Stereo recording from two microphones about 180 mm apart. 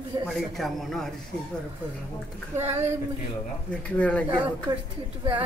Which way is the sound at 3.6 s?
5° left (ahead or behind).